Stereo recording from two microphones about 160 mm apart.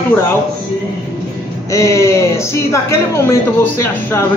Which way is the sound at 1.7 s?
20° left (ahead or behind).